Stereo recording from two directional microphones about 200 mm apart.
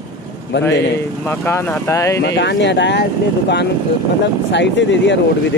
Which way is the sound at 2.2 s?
60° left (ahead or behind).